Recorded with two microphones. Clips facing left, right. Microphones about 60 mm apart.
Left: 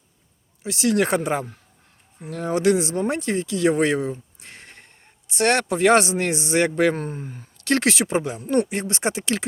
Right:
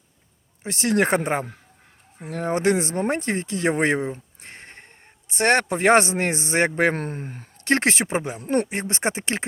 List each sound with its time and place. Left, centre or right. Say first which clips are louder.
0.6 s speech: even; right
6.9 s speech: even; right
7.6 s speech: even; right